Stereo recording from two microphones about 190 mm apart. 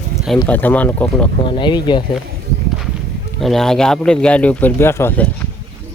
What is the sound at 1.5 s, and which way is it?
Speech, 25° left (ahead or behind).